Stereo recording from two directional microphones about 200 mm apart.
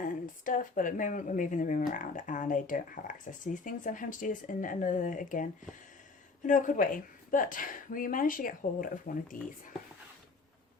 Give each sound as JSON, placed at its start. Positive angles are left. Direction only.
{"t": 0.0, "sound": "a woman's voice", "side_deg": 40}